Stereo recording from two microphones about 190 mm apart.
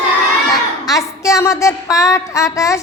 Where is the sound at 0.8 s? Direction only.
15° left (ahead or behind).